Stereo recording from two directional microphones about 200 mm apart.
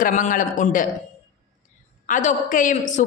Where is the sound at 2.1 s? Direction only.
40° left (ahead or behind).